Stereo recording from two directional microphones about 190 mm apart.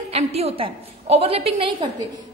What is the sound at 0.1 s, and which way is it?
A woman's voice, 35° right (ahead or behind).